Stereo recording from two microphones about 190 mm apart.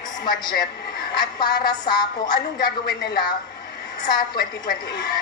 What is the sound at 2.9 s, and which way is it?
Speech, 55° left (ahead or behind).